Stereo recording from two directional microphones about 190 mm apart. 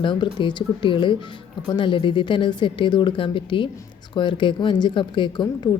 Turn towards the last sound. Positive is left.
turn(degrees=25)  # may be behind; listen again after turning